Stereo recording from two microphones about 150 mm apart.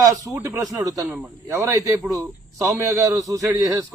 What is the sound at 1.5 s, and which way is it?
A man's voice, 20° right (ahead or behind).